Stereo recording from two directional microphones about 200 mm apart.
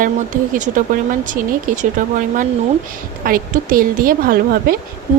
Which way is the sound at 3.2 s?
45° right (ahead or behind).